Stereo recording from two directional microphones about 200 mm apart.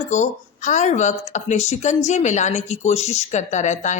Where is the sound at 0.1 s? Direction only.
35° left (ahead or behind).